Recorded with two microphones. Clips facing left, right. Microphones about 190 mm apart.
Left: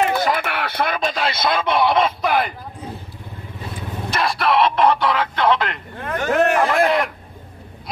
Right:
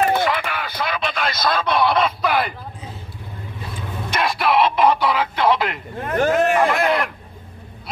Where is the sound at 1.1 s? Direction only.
30° left (ahead or behind).